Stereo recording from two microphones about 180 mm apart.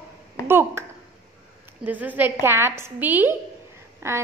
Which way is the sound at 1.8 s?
10° right (ahead or behind).